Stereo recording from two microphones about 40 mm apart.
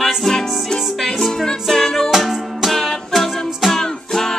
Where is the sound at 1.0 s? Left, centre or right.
Centre.